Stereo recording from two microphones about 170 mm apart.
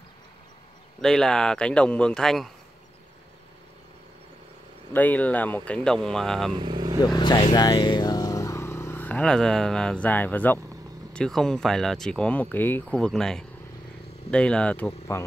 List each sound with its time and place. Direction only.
1.0 s speech: centre (ahead or behind)
4.9 s speech: 10° left (ahead or behind)
6.5 s vehicle: 25° right (ahead or behind)
7.2 s speech: 25° left (ahead or behind)
7.5 s vehicle: 25° left (ahead or behind); by 10.6 s 10° left (ahead or behind)
11.1 s speech: 5° left (ahead or behind)